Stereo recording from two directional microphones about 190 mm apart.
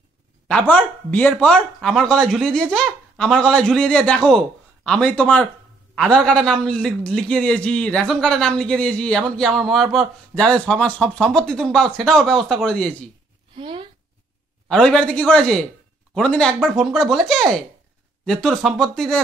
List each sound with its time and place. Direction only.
0.5 s a man's voice: 5° left (ahead or behind)
13.6 s speech: 25° right (ahead or behind)
14.7 s a man's voice: 5° left (ahead or behind)